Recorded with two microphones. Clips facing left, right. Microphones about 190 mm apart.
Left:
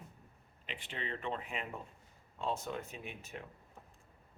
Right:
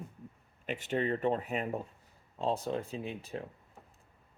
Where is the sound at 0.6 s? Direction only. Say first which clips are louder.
Right 11 dB; 45° right (ahead or behind).